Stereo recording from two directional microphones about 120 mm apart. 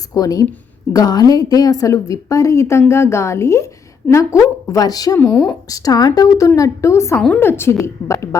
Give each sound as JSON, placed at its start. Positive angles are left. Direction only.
{"t": 0.1, "sound": "a woman's voice", "side_deg": 30}
{"t": 5.2, "sound": "speech", "side_deg": 20}
{"t": 5.6, "sound": "a woman's voice", "side_deg": 30}